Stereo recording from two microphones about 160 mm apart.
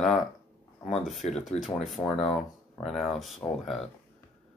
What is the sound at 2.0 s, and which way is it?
Speech, 20° left (ahead or behind).